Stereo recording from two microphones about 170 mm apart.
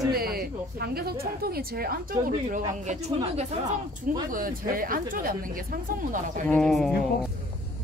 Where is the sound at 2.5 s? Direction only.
40° right (ahead or behind).